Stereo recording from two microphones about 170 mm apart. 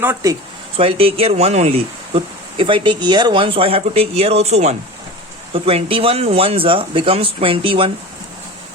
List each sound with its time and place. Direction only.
0.0 s speech: 15° right (ahead or behind)
0.8 s speech: 35° right (ahead or behind)